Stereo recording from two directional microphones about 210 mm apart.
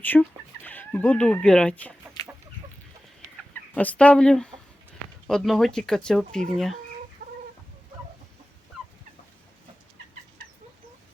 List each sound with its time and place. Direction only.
0.0 s speech: 10° left (ahead or behind)
3.8 s speech: 5° left (ahead or behind)
7.2 s chicken: 40° right (ahead or behind)